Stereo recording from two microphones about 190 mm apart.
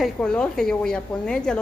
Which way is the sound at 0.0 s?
5° left (ahead or behind).